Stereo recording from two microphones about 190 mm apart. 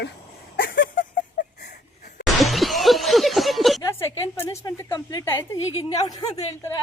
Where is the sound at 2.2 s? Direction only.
Centre (ahead or behind).